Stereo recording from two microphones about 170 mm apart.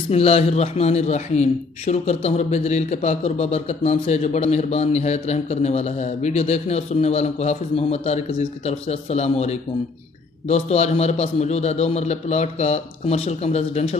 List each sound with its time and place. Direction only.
0.1 s a man's voice: 35° left (ahead or behind)